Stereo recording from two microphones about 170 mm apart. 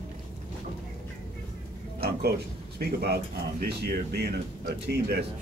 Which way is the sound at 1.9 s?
65° right (ahead or behind).